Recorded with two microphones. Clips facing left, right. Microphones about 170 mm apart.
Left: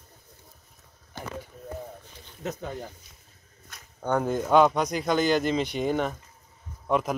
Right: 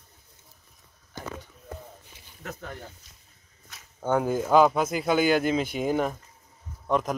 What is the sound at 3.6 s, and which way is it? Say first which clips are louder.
Speech: right 1 dB; 5° right (ahead or behind).